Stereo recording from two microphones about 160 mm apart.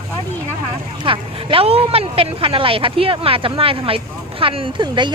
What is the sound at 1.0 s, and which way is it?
Speech, 35° right (ahead or behind).